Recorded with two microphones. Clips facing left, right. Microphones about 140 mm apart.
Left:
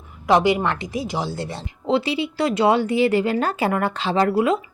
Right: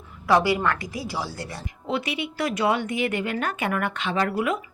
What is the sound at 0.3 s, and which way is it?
A woman's voice, 20° left (ahead or behind).